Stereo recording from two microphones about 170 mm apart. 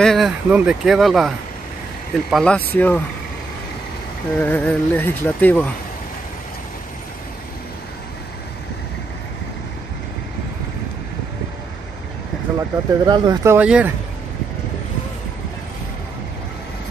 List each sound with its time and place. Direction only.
0.0 s speech: centre (ahead or behind)
4.4 s speech: 10° left (ahead or behind)
12.5 s speech: 20° right (ahead or behind)